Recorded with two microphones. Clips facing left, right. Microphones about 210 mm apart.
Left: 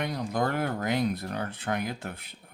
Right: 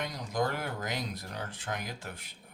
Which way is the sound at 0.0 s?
60° left (ahead or behind).